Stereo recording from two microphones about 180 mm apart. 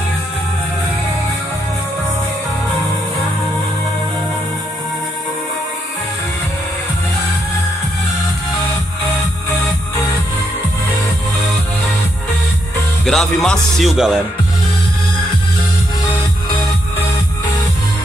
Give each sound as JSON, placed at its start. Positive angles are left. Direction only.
{"t": 13.0, "sound": "speech", "side_deg": 0}